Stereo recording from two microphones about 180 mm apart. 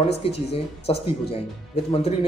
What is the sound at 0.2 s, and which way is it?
A man's voice, 35° left (ahead or behind).